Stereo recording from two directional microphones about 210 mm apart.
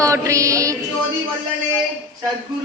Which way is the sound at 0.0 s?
15° right (ahead or behind).